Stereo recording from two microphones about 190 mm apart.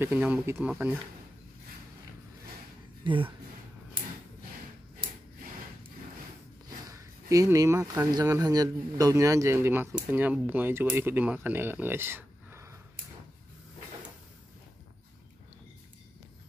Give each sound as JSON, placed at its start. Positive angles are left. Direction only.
{"t": 0.0, "sound": "speech", "side_deg": -10}
{"t": 3.0, "sound": "speech", "side_deg": -25}
{"t": 6.9, "sound": "speech", "side_deg": -15}